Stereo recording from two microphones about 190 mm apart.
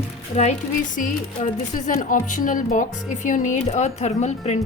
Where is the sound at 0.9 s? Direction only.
40° left (ahead or behind).